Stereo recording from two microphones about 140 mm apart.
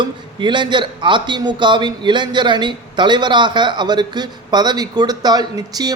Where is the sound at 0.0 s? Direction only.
35° right (ahead or behind).